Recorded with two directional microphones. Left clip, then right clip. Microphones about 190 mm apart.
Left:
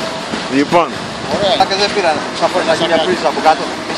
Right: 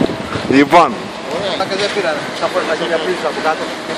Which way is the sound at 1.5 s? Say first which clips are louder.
Left 5 dB; 35° left (ahead or behind).